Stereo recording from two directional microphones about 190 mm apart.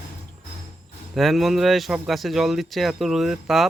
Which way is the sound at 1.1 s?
Centre (ahead or behind).